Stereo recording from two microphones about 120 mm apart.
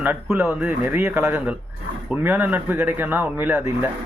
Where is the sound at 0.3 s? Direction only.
15° right (ahead or behind).